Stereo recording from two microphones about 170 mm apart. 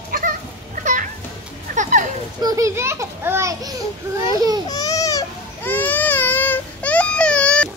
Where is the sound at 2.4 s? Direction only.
20° right (ahead or behind).